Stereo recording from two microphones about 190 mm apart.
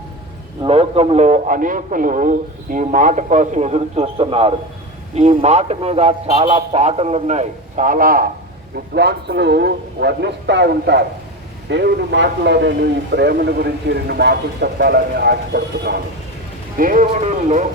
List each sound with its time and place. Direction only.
0.6 s speech: 30° right (ahead or behind); by 8.3 s 50° right (ahead or behind)
9.0 s a man's voice: 60° right (ahead or behind)
16.7 s speech: 45° right (ahead or behind)